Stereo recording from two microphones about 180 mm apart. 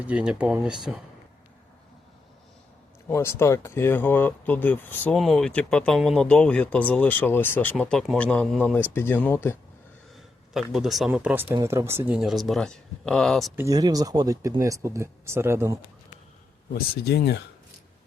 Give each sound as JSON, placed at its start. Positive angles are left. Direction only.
{"t": 0.0, "sound": "speech", "side_deg": -5}
{"t": 3.1, "sound": "speech", "side_deg": 15}
{"t": 10.5, "sound": "speech", "side_deg": 0}
{"t": 13.6, "sound": "speech", "side_deg": -20}
{"t": 16.7, "sound": "speech", "side_deg": 60}